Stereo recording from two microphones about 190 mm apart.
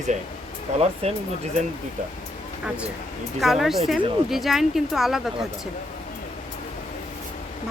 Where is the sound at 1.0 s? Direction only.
30° right (ahead or behind).